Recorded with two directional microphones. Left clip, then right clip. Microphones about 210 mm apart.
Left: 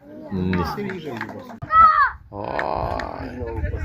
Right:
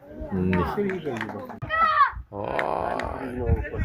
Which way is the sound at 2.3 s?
5° left (ahead or behind).